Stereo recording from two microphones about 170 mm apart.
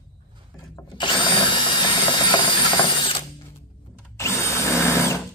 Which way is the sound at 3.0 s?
30° left (ahead or behind).